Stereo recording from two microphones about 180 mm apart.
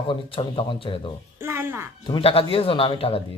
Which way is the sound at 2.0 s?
30° left (ahead or behind).